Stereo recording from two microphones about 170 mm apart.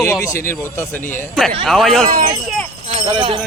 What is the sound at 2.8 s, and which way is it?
Speech, 35° right (ahead or behind).